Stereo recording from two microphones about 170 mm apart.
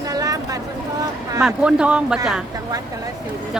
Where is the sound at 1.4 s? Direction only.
5° right (ahead or behind).